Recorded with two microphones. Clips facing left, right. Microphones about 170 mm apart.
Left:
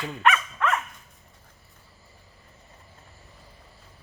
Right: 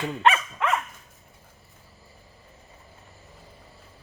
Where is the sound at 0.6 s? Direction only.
15° right (ahead or behind).